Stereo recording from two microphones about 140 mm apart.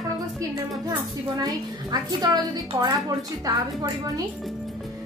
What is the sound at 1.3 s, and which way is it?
A woman's voice, 25° right (ahead or behind).